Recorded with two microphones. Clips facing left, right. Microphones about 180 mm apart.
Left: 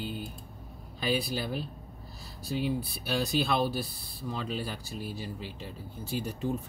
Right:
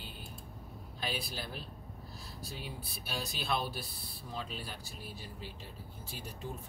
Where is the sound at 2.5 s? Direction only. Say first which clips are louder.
Left 16 dB; 75° left (ahead or behind).